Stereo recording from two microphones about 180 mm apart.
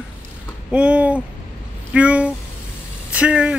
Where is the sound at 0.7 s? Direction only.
5° right (ahead or behind).